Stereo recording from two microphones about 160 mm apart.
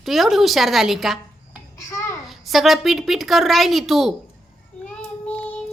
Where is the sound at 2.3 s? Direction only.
Centre (ahead or behind).